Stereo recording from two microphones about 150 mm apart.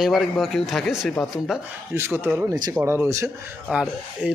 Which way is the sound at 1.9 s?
15° right (ahead or behind).